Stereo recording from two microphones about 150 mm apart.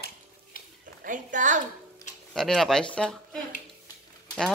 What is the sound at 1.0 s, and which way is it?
Speech, 60° right (ahead or behind).